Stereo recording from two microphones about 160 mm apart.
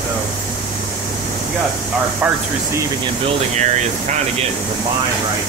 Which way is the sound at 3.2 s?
45° right (ahead or behind).